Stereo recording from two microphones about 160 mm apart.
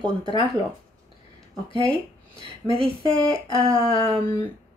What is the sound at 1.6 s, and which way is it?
Speech, 30° left (ahead or behind).